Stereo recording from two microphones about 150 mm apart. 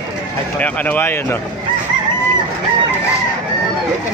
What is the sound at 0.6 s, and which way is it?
Speech, 10° left (ahead or behind).